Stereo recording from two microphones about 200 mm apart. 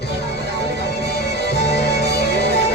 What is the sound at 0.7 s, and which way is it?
Music, 55° left (ahead or behind).